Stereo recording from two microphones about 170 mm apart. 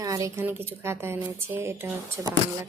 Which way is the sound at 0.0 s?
20° right (ahead or behind).